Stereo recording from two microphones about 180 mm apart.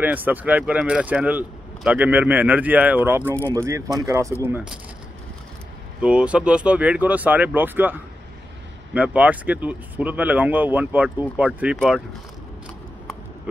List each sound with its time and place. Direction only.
0.0 s speech: 10° right (ahead or behind)
5.9 s speech: 5° right (ahead or behind)
8.9 s speech: 5° right (ahead or behind)